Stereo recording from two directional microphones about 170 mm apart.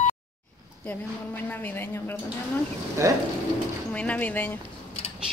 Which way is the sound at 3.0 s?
20° right (ahead or behind).